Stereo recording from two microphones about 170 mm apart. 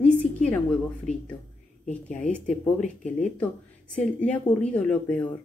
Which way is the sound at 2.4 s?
45° left (ahead or behind).